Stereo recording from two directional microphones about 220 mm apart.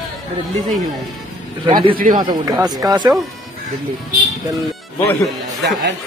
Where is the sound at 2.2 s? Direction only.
20° right (ahead or behind).